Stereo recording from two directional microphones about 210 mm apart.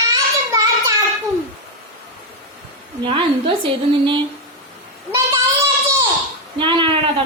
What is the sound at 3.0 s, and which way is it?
Speech, 25° right (ahead or behind).